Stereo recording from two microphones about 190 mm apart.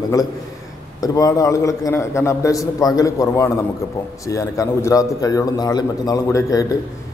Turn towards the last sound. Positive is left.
turn(degrees=15)  # may be behind; listen again after turning